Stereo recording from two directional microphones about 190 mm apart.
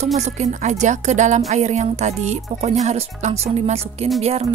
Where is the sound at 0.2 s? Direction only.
40° right (ahead or behind).